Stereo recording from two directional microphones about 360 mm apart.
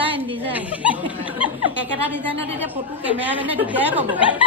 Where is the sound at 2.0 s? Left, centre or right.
Centre.